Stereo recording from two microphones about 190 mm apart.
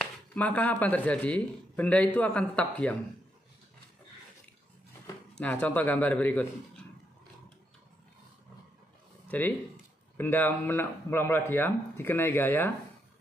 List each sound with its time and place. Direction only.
0.0 s speech: 5° left (ahead or behind)
5.4 s speech: 10° left (ahead or behind)
9.3 s speech: 10° left (ahead or behind)